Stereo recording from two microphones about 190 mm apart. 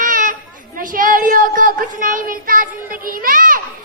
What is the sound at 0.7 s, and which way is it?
Child singing, 45° right (ahead or behind).